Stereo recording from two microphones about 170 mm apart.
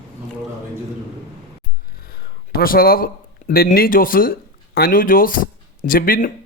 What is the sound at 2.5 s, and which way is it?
Speech, 60° left (ahead or behind).